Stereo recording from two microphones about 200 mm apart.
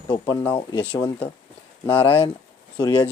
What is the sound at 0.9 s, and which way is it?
Speech, 15° left (ahead or behind).